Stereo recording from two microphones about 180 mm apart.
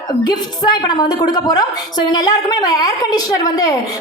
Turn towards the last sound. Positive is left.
turn(degrees=20)  # may be behind; listen again after turning